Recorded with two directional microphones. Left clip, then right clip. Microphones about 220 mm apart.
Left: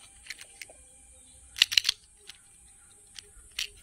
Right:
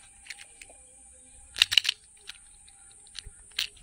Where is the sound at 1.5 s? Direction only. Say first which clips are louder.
Right 1 dB; 25° right (ahead or behind).